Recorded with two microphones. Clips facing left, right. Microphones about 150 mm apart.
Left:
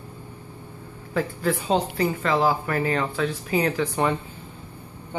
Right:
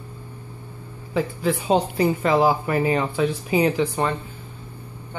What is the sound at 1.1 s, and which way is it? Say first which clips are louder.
Speech: right 2 dB; 10° right (ahead or behind).